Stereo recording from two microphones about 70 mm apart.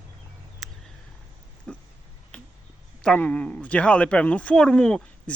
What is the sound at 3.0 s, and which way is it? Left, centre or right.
Speech, centre.